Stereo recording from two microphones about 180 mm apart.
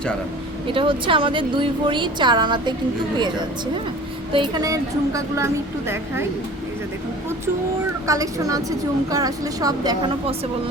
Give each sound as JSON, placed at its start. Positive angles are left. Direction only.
{"t": 0.7, "sound": "speech", "side_deg": -30}
{"t": 8.0, "sound": "speech", "side_deg": -20}